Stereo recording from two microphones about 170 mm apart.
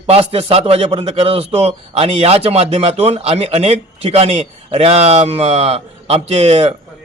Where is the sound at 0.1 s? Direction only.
35° right (ahead or behind).